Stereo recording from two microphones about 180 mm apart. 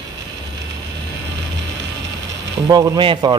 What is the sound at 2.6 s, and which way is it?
Speech, 20° right (ahead or behind).